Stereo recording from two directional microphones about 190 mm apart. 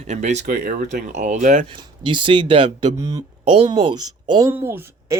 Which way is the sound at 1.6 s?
25° right (ahead or behind).